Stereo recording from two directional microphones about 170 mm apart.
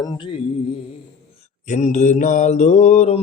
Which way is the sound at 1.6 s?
45° left (ahead or behind).